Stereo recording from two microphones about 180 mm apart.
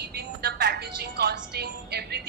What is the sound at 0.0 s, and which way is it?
Speech, 60° right (ahead or behind).